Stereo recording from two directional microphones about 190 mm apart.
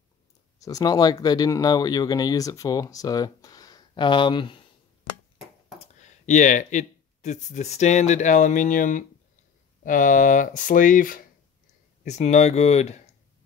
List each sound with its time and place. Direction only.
0.6 s speech: 20° left (ahead or behind)
6.0 s speech: 40° left (ahead or behind)